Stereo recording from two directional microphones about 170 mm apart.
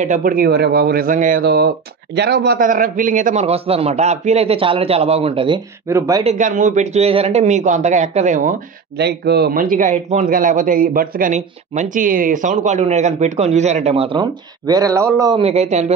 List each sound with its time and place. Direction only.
0.0 s speech: 50° right (ahead or behind)
1.4 s speech: 70° right (ahead or behind)
2.6 s a man's voice: 50° right (ahead or behind); by 5.6 s 30° right (ahead or behind)
5.9 s speech: 20° right (ahead or behind)
6.2 s speech: 45° right (ahead or behind)
8.9 s speech: 75° right (ahead or behind); by 14.2 s 35° right (ahead or behind)
14.7 s speech: 20° right (ahead or behind)
15.4 s a man's voice: 40° right (ahead or behind)